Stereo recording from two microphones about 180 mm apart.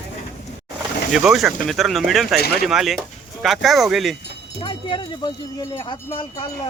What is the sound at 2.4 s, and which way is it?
Speech, 60° left (ahead or behind).